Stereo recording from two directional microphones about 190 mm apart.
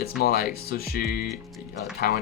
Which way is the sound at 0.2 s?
55° left (ahead or behind).